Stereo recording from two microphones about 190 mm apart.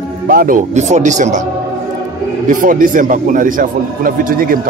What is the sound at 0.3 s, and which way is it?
A man's voice, 45° right (ahead or behind).